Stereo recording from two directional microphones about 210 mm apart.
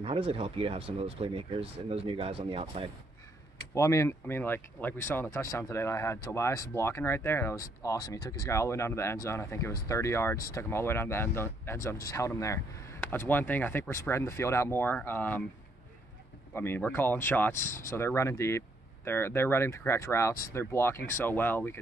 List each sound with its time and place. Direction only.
0.0 s speech: 25° right (ahead or behind)
3.7 s speech: 15° left (ahead or behind)
16.5 s speech: 10° left (ahead or behind)